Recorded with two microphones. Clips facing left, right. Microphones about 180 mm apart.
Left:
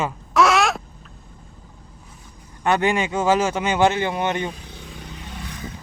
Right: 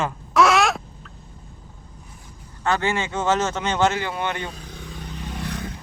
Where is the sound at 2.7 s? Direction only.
15° left (ahead or behind).